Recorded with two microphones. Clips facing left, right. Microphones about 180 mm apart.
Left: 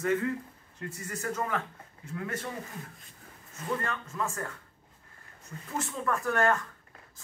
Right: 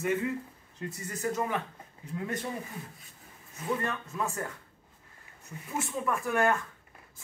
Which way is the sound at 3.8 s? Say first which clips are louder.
Right 1 dB; 20° right (ahead or behind).